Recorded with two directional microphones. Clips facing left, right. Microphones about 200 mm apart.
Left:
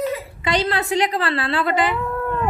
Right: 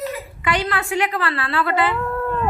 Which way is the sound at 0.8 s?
20° left (ahead or behind).